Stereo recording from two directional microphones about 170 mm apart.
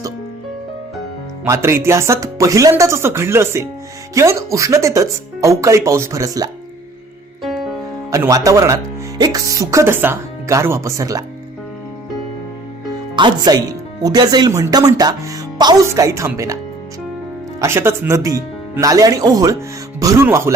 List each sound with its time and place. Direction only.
1.5 s speech: 15° right (ahead or behind)
7.4 s music: centre (ahead or behind)
8.1 s speech: 20° right (ahead or behind)
13.1 s speech: 25° right (ahead or behind)
17.6 s speech: 15° right (ahead or behind)